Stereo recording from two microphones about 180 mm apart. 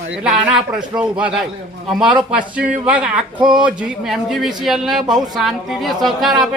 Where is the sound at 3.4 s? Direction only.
25° right (ahead or behind).